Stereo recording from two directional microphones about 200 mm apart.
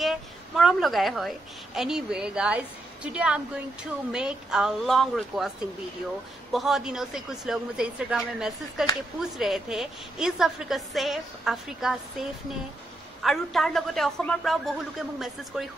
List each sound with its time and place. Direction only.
0.0 s a sound: centre (ahead or behind)
1.8 s a woman's voice: centre (ahead or behind)
6.5 s a woman's voice: centre (ahead or behind)